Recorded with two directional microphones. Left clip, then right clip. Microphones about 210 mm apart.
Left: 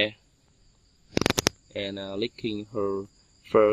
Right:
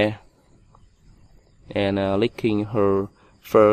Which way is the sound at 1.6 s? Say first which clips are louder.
Right 11 dB; 20° right (ahead or behind).